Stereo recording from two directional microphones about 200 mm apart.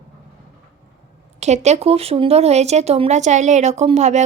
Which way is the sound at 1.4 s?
35° right (ahead or behind).